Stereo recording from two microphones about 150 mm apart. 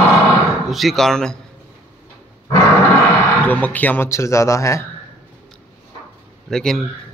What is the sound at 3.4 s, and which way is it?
Speech, 10° left (ahead or behind).